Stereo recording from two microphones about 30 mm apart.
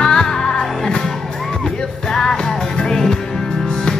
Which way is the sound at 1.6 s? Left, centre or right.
Centre.